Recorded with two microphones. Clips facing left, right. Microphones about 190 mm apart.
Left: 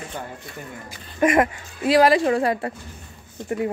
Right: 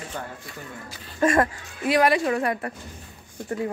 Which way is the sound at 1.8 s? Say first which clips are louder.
Left 4 dB; 35° left (ahead or behind).